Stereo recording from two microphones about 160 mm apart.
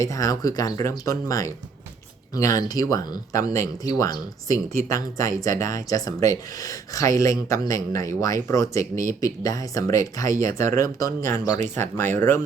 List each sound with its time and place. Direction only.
0.0 s speech: 20° left (ahead or behind)